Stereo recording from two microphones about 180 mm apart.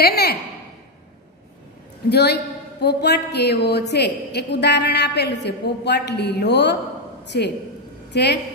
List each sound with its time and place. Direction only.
0.0 s a woman's voice: 60° left (ahead or behind)
2.0 s a woman's voice: 65° left (ahead or behind)